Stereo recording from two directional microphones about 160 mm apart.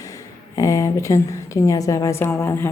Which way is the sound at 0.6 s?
20° left (ahead or behind).